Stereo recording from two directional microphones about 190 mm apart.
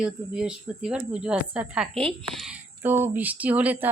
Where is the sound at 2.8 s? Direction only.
10° right (ahead or behind).